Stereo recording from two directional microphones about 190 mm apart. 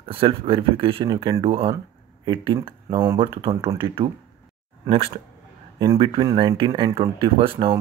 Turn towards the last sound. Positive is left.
turn(degrees=-30)  # may be behind; listen again after turning